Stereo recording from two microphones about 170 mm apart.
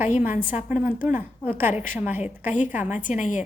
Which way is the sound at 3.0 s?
50° left (ahead or behind).